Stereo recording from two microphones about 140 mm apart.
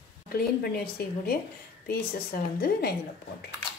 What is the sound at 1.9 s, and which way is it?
Speech, 90° left.